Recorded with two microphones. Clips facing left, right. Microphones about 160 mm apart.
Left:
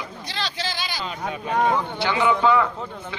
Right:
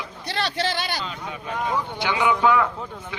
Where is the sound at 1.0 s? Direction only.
55° left (ahead or behind).